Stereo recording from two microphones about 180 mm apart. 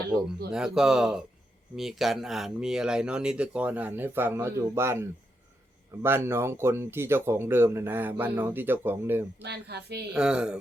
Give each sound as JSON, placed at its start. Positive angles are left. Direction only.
{"t": 0.5, "sound": "speech", "side_deg": -5}
{"t": 9.4, "sound": "speech", "side_deg": -65}
{"t": 10.2, "sound": "speech", "side_deg": -5}